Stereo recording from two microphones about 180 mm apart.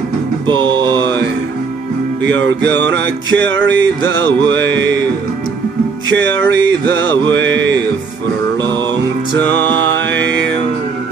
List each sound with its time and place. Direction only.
0.5 s music: 25° right (ahead or behind)
2.2 s music: 85° right
4.5 s music: 90° right
6.0 s music: 85° right
7.3 s mantra: 90° right
9.8 s music: 85° right